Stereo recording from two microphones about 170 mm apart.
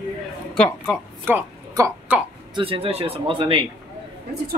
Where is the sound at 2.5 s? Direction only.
30° right (ahead or behind).